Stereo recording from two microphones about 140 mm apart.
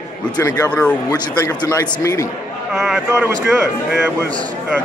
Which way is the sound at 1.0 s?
25° left (ahead or behind).